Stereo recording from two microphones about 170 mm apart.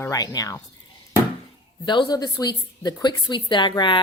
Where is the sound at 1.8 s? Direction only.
25° left (ahead or behind).